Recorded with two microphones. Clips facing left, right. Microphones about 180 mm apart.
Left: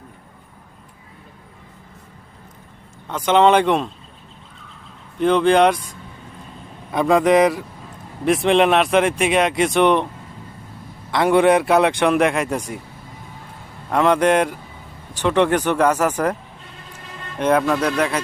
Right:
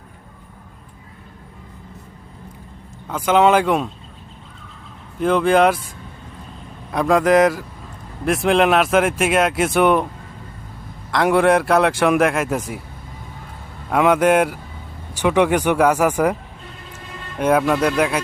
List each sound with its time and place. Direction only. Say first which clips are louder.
3.1 s speech: even; 5° right (ahead or behind)
5.2 s speech: left 1 dB; 5° right (ahead or behind)
6.9 s speech: even; centre (ahead or behind)
11.1 s speech: left 1 dB; centre (ahead or behind)
13.9 s speech: right 1 dB; 5° right (ahead or behind)